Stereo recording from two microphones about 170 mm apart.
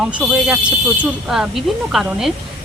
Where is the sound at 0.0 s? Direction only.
5° right (ahead or behind).